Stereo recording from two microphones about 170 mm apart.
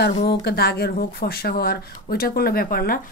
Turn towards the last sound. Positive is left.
turn(degrees=60)  # may be behind; listen again after turning